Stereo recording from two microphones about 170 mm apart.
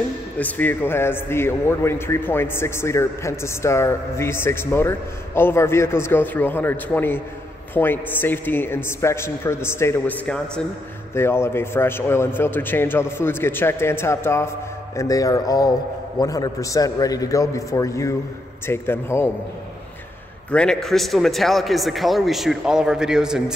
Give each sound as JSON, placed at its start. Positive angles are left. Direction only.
{"t": 0.4, "sound": "a man's voice", "side_deg": 10}
{"t": 20.5, "sound": "a man's voice", "side_deg": 5}